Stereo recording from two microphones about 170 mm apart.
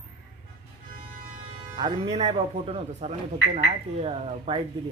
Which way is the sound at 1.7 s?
30° right (ahead or behind).